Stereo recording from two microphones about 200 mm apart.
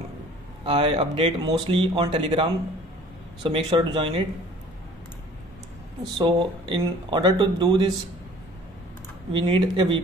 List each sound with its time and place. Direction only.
0.7 s speech: 25° right (ahead or behind)
6.1 s speech: 25° right (ahead or behind)
9.3 s speech: 25° right (ahead or behind)